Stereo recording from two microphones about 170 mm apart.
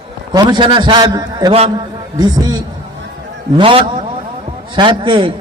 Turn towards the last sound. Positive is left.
turn(degrees=-30)  # may be behind; listen again after turning